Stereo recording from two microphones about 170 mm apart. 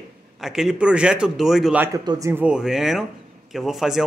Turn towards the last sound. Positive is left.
turn(degrees=0)  # may be behind; listen again after turning